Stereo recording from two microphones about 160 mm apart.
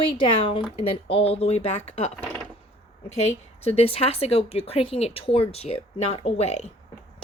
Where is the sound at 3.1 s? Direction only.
40° left (ahead or behind).